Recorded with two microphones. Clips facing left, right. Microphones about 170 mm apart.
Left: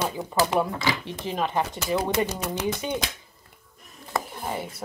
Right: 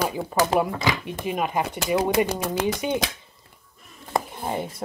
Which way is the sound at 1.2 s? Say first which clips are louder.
Right 1 dB; 15° right (ahead or behind).